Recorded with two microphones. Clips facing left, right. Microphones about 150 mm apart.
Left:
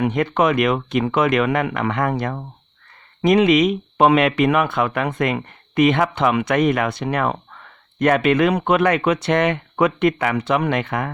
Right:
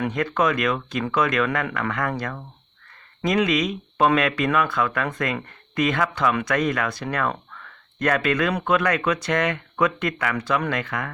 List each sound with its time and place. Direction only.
0.0 s speech: 25° left (ahead or behind)